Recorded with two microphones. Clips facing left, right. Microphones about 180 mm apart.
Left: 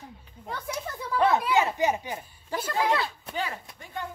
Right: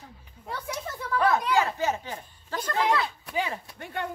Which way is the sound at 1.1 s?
20° left (ahead or behind).